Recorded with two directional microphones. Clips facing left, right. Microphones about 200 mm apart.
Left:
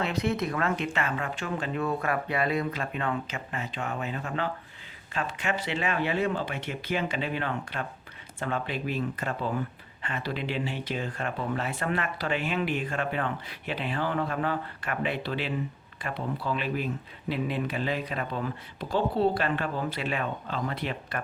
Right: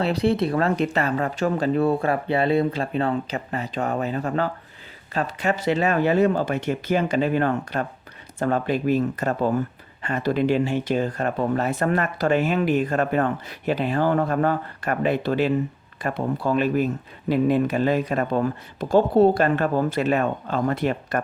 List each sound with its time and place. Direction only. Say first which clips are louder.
0.0 s speech: right 7 dB; 35° right (ahead or behind)